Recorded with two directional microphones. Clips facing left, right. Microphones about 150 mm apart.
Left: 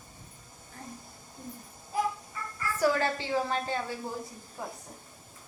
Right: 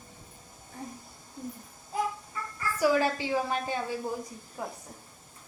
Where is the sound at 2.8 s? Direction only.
10° right (ahead or behind).